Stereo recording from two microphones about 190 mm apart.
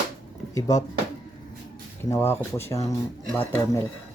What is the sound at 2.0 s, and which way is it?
Speech, 15° left (ahead or behind).